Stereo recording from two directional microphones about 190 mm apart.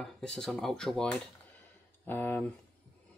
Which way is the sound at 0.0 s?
5° left (ahead or behind).